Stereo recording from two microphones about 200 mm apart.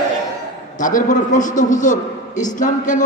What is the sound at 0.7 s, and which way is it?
A man's voice, 40° left (ahead or behind).